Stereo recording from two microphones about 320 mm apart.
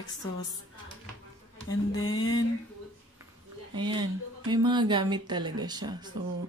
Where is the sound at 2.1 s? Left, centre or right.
Centre.